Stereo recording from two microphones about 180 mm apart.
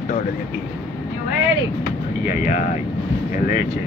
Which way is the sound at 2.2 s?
45° left (ahead or behind).